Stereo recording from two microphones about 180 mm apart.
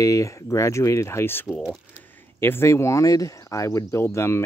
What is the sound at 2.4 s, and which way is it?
Speech, 15° left (ahead or behind).